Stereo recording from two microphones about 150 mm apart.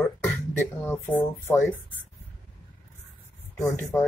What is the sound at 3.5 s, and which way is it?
Speech, 20° left (ahead or behind).